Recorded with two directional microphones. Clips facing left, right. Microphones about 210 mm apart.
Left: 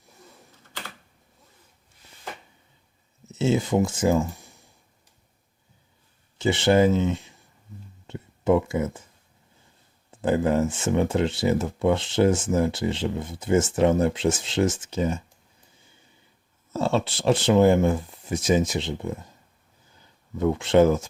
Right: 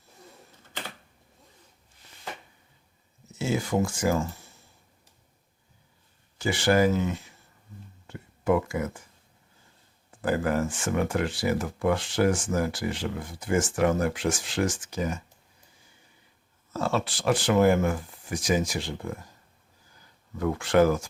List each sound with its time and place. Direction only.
3.3 s speech: 25° left (ahead or behind)
6.4 s speech: 25° left (ahead or behind)
8.0 s a sound: 25° left (ahead or behind)
10.1 s speech: 25° left (ahead or behind)
16.7 s speech: 25° left (ahead or behind)